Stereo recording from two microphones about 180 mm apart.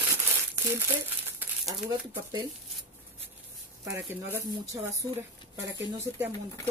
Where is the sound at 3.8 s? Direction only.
15° right (ahead or behind).